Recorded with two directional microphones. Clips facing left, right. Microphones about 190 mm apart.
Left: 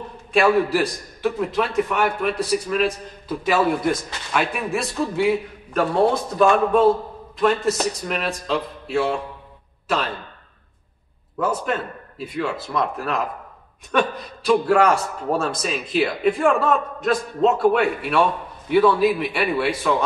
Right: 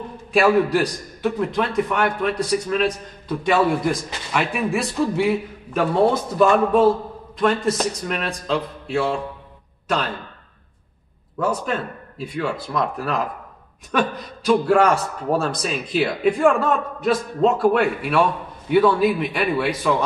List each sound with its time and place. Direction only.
0.3 s a man's voice: centre (ahead or behind)
11.3 s a man's voice: 5° left (ahead or behind)